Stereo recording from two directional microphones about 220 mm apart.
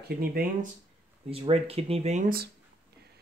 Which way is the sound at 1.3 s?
25° right (ahead or behind).